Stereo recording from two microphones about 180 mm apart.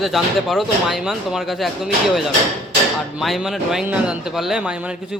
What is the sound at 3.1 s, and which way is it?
A man's voice, centre (ahead or behind).